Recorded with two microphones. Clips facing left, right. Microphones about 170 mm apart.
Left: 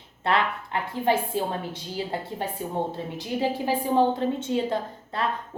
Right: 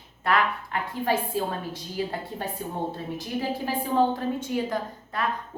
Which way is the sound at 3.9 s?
25° left (ahead or behind).